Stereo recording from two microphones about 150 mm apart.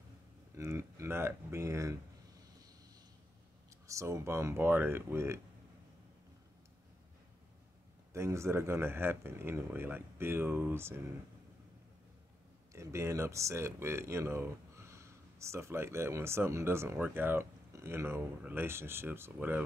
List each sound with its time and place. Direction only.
0.6 s speech: 20° right (ahead or behind)
3.8 s speech: 20° right (ahead or behind)
8.1 s speech: 20° right (ahead or behind)
12.7 s speech: 20° right (ahead or behind)